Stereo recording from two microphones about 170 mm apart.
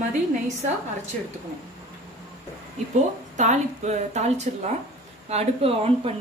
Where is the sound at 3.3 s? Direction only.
45° right (ahead or behind).